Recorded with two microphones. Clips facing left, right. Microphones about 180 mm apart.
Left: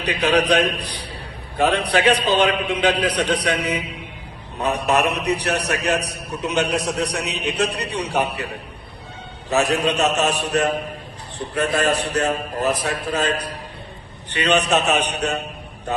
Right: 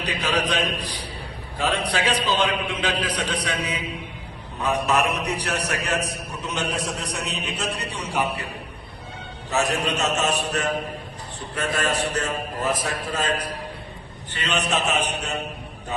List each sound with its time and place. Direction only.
0.0 s a man's voice: 60° left (ahead or behind)
4.9 s a man's voice: 65° left (ahead or behind)
9.5 s a man's voice: 65° left (ahead or behind)
14.3 s a man's voice: 70° left (ahead or behind)